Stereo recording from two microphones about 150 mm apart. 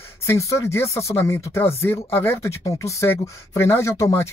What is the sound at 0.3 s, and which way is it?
Speech, 20° left (ahead or behind).